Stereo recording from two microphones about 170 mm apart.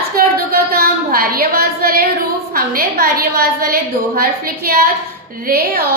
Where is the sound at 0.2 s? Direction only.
60° right (ahead or behind).